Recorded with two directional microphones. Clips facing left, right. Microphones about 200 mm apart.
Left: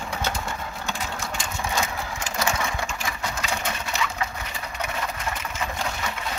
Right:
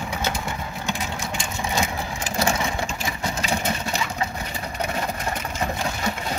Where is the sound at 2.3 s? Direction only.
30° right (ahead or behind).